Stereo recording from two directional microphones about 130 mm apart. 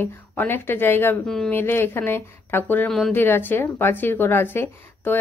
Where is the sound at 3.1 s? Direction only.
15° left (ahead or behind).